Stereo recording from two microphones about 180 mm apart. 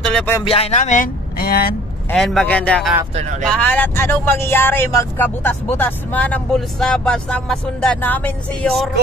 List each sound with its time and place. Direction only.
0.0 s a sound: 5° left (ahead or behind)
0.4 s speech: 30° left (ahead or behind); by 1.8 s 55° left (ahead or behind)
2.1 s speech: centre (ahead or behind)